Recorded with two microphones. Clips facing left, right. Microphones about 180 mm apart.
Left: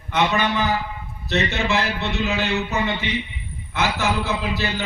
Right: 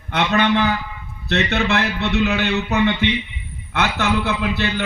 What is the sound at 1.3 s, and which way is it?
A man's voice, 65° right (ahead or behind).